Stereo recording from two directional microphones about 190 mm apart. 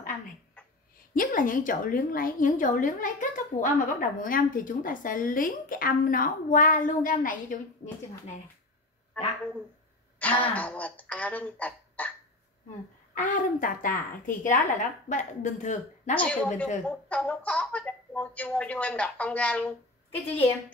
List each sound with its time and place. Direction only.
1.1 s a woman's voice: 45° left (ahead or behind)
10.1 s throat clearing: 10° left (ahead or behind)
11.1 s speech: 10° left (ahead or behind)
13.1 s a woman's voice: 45° left (ahead or behind)
16.2 s speech: 5° left (ahead or behind)